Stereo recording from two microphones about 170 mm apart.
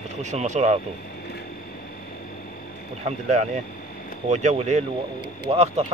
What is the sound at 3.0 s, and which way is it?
Speech, 40° right (ahead or behind).